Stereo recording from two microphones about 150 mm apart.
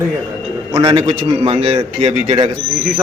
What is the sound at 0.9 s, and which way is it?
A man's voice, 40° right (ahead or behind).